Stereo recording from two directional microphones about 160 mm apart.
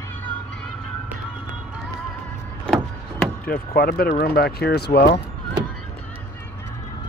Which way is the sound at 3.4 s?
70° left (ahead or behind).